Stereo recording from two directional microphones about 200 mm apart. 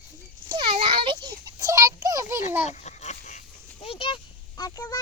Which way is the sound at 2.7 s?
35° left (ahead or behind).